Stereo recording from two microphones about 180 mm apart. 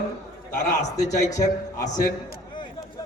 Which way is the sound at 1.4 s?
20° left (ahead or behind).